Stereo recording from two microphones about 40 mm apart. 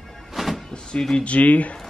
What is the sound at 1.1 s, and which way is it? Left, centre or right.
Speech, left.